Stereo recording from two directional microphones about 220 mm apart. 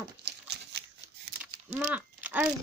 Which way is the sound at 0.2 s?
50° right (ahead or behind).